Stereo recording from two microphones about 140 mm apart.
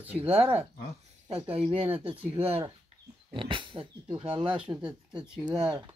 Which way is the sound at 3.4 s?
35° right (ahead or behind).